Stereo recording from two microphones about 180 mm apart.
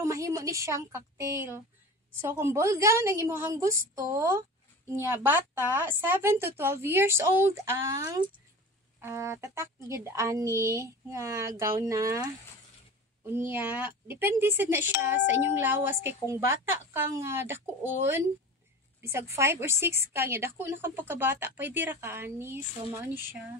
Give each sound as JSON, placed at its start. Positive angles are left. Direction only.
{"t": 0.0, "sound": "a woman's voice", "side_deg": -15}
{"t": 13.3, "sound": "a woman's voice", "side_deg": -10}